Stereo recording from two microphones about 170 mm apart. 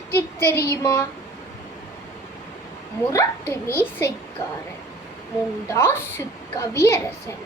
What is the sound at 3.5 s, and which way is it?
Speech, 15° left (ahead or behind).